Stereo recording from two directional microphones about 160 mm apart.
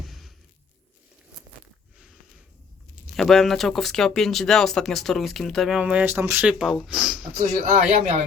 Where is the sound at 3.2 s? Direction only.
Centre (ahead or behind).